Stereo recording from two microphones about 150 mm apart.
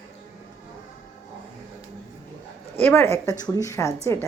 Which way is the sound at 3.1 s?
20° left (ahead or behind).